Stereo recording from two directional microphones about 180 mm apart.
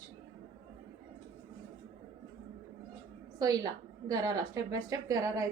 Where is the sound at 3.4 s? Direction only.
20° right (ahead or behind).